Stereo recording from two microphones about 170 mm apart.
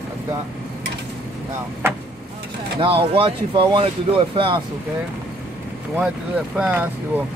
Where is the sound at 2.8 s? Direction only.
35° right (ahead or behind).